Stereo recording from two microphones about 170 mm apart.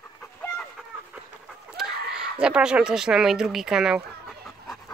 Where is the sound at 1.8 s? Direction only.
5° right (ahead or behind).